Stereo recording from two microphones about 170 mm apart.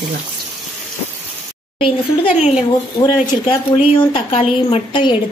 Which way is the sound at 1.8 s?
35° left (ahead or behind).